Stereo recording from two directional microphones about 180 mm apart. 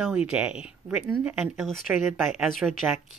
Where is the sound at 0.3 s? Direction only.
5° right (ahead or behind).